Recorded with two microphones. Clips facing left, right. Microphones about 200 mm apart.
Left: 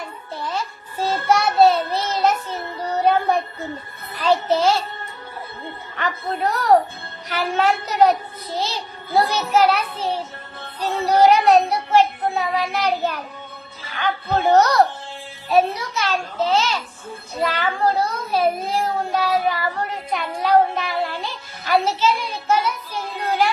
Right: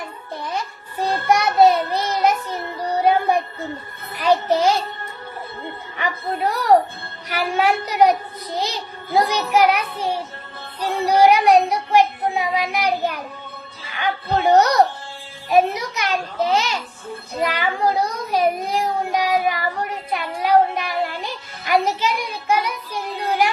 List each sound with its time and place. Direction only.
0.4 s child singing: 15° right (ahead or behind)
4.2 s a child's voice: 15° right (ahead or behind)
6.0 s a child's voice: 10° right (ahead or behind)